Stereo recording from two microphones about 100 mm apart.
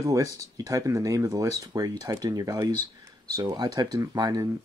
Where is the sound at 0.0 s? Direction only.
35° right (ahead or behind).